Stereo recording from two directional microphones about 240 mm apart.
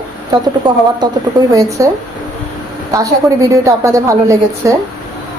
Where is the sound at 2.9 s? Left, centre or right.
Centre.